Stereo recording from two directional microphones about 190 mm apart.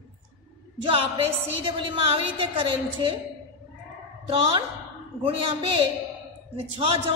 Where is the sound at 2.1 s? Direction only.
25° right (ahead or behind).